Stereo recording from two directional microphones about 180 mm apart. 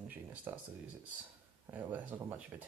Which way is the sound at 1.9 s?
10° right (ahead or behind).